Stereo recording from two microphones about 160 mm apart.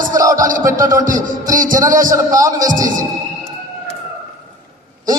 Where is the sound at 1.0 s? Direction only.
55° right (ahead or behind).